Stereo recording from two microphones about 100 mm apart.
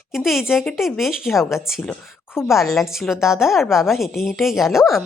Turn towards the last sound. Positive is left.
turn(degrees=-5)  # may be behind; listen again after turning